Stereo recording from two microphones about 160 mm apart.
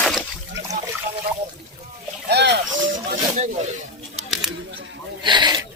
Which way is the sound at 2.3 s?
90° right.